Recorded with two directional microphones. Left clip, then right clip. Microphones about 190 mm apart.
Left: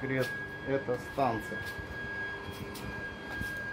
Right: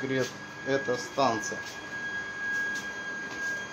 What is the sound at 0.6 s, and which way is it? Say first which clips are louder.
Speech: right 5 dB; 15° right (ahead or behind).